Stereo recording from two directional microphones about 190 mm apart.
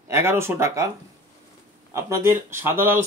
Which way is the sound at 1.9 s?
15° right (ahead or behind).